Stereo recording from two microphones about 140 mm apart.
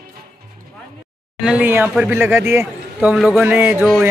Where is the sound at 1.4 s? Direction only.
10° right (ahead or behind).